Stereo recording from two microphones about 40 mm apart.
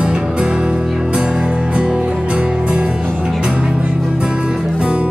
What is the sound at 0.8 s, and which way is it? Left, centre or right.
Music, centre.